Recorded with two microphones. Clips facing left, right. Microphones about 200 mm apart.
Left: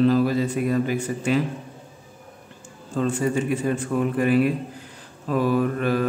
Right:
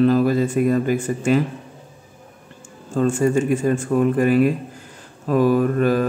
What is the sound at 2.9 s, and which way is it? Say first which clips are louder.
A man's voice: right 5 dB; 45° right (ahead or behind).